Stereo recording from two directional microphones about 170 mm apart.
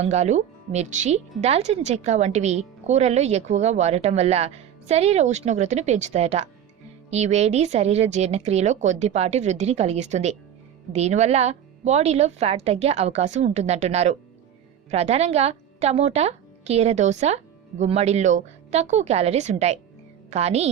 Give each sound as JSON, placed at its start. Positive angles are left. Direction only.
{"t": 0.0, "sound": "a woman's voice", "side_deg": -40}